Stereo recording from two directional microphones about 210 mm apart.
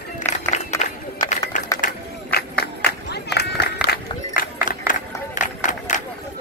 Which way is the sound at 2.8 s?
50° left (ahead or behind).